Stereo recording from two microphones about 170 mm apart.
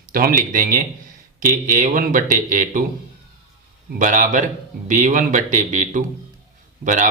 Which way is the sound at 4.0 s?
50° right (ahead or behind).